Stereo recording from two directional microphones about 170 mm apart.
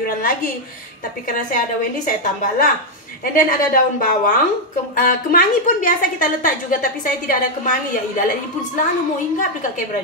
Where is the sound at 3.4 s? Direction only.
55° left (ahead or behind).